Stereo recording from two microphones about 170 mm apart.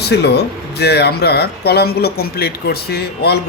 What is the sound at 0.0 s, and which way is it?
Speech, 75° left (ahead or behind).